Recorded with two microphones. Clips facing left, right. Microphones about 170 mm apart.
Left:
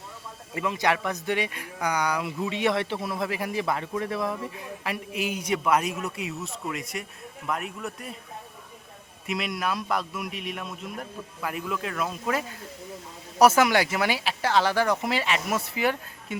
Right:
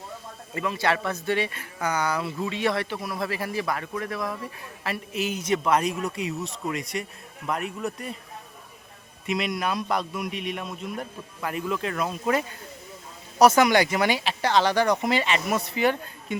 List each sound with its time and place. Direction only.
0.5 s speech: 15° left (ahead or behind)
4.8 s speech: 10° left (ahead or behind)
9.2 s speech: centre (ahead or behind)